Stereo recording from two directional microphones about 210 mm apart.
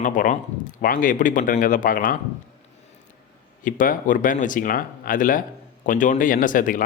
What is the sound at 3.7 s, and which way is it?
A man's voice, 40° left (ahead or behind).